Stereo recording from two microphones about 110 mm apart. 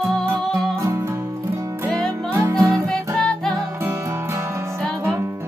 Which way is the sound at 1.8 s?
5° left (ahead or behind).